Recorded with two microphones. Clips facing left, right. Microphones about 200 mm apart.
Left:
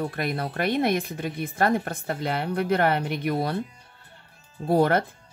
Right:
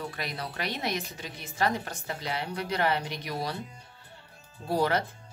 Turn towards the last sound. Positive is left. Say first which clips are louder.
# left 6 dB
turn(degrees=55)  # may be behind; listen again after turning